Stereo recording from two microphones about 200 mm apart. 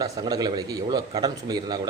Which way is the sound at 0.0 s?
20° right (ahead or behind).